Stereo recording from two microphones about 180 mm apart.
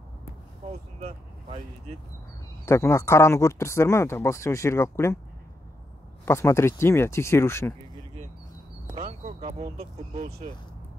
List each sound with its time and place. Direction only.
0.9 s speech: 35° right (ahead or behind)
2.6 s speech: 15° left (ahead or behind)
6.2 s speech: 15° left (ahead or behind)
8.9 s a sound: 45° right (ahead or behind)
9.4 s a sound: 30° right (ahead or behind)
10.1 s speech: 35° right (ahead or behind)